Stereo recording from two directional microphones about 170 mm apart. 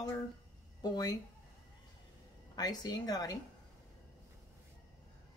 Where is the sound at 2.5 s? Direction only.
25° left (ahead or behind).